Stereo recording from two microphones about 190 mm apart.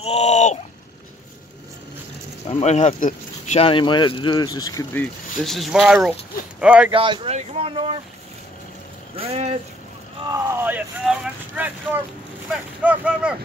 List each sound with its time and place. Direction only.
0.0 s a sound: 35° left (ahead or behind)
2.4 s speech: 35° left (ahead or behind); by 5.1 s 15° left (ahead or behind)
5.4 s speech: centre (ahead or behind)
6.9 s speech: 25° right (ahead or behind)
9.1 s speech: 35° right (ahead or behind)
10.2 s speech: 15° right (ahead or behind)